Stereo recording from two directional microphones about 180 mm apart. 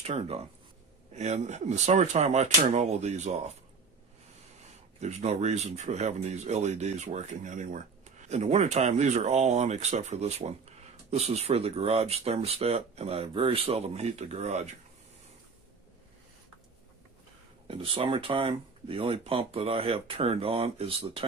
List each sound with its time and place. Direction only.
0.0 s speech: 35° right (ahead or behind)
5.0 s speech: 40° right (ahead or behind)
17.6 s speech: 30° right (ahead or behind)